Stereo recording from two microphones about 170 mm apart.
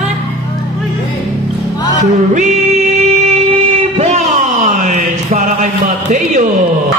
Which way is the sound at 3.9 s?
40° right (ahead or behind).